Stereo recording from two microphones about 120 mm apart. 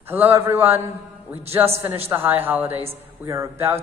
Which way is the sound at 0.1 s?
20° right (ahead or behind).